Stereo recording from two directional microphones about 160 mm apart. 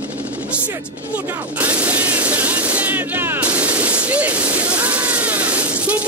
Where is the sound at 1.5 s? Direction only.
10° right (ahead or behind).